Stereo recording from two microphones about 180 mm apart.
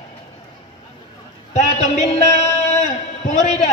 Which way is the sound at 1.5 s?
40° left (ahead or behind).